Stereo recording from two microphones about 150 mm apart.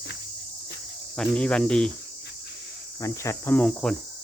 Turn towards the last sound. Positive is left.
turn(degrees=0)  # may be behind; listen again after turning